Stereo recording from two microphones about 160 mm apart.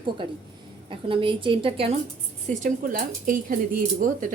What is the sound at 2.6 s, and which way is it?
Speech, 55° right (ahead or behind).